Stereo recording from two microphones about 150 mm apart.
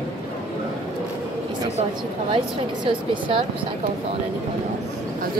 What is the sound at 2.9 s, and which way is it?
Speech, 35° right (ahead or behind).